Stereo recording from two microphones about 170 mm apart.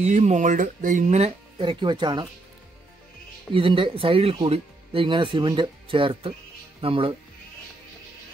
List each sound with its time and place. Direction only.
0.0 s speech: 40° right (ahead or behind); by 2.2 s 25° right (ahead or behind)
3.5 s speech: 30° right (ahead or behind)